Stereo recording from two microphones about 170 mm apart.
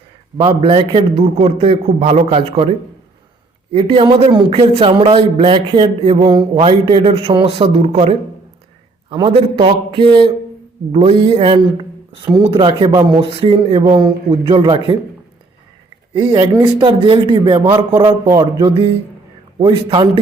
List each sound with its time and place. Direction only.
0.3 s speech: 30° right (ahead or behind)
12.9 s speech: 15° right (ahead or behind)
13.1 s speech: 30° right (ahead or behind)
16.1 s speech: 25° right (ahead or behind)